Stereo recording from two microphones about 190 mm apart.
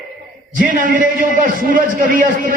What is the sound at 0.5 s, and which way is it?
A man's voice, 45° right (ahead or behind).